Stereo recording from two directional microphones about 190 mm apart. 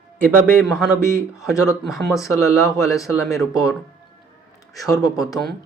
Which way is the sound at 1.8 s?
Centre (ahead or behind).